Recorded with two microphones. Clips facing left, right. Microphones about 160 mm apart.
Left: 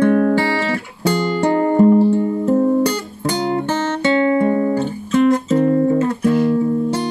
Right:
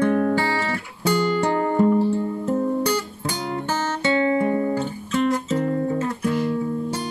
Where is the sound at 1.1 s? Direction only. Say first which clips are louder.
Left 4 dB; 45° left (ahead or behind).